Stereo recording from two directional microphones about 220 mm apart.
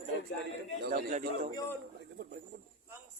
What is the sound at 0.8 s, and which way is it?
Speech, 45° right (ahead or behind).